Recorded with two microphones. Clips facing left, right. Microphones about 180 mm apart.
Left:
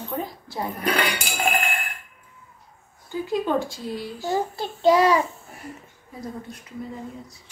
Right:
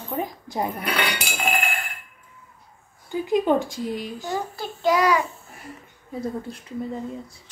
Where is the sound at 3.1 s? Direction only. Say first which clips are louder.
Right 3 dB; 15° right (ahead or behind).